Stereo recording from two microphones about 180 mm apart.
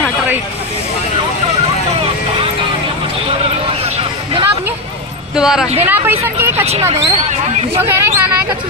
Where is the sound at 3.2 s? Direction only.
35° right (ahead or behind).